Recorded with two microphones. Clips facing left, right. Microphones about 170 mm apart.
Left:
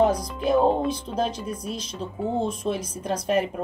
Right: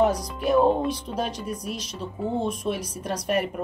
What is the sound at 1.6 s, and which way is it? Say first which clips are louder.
A woman's voice: left 1 dB; 25° left (ahead or behind).